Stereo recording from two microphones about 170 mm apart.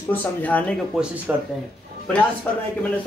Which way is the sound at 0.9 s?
Centre (ahead or behind).